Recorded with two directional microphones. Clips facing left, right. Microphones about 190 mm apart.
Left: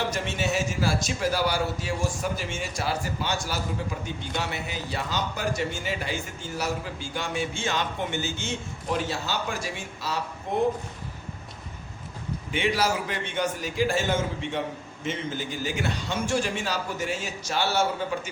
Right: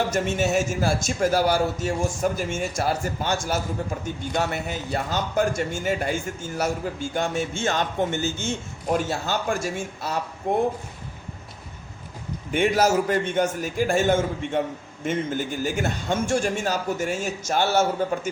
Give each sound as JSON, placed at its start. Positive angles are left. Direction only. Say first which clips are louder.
{"t": 0.1, "sound": "a man's voice", "louder": "right 5 dB", "side_deg": -45}
{"t": 12.5, "sound": "a man's voice", "louder": "right 6 dB", "side_deg": -45}